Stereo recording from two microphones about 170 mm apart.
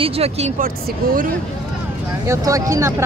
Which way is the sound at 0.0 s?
35° right (ahead or behind).